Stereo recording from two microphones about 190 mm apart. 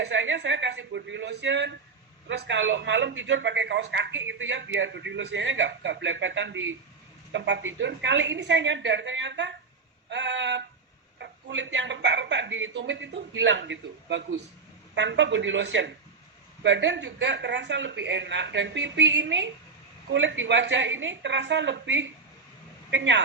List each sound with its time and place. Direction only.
0.0 s a man's voice: 70° right (ahead or behind)
7.3 s a man's voice: 65° right (ahead or behind)